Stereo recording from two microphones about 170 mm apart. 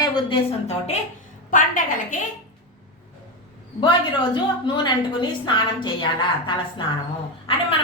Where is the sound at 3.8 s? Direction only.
30° left (ahead or behind).